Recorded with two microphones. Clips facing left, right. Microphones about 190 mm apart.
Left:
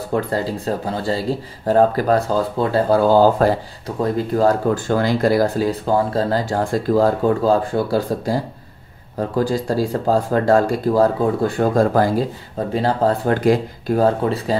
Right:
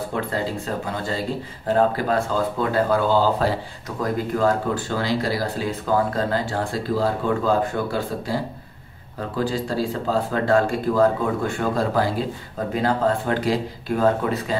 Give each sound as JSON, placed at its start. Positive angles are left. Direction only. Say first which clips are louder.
{"t": 0.1, "sound": "speech", "louder": "left 8 dB", "side_deg": 35}
{"t": 4.3, "sound": "speech", "louder": "left 5 dB", "side_deg": 35}
{"t": 4.7, "sound": "speech", "louder": "left 5 dB", "side_deg": 50}
{"t": 9.4, "sound": "speech", "louder": "left 4 dB", "side_deg": 40}
{"t": 13.9, "sound": "speech", "louder": "left 3 dB", "side_deg": 35}